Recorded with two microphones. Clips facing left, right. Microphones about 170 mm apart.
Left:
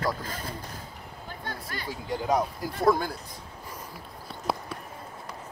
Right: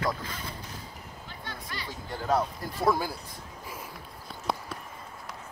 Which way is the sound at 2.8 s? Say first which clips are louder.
Left 3 dB; 5° right (ahead or behind).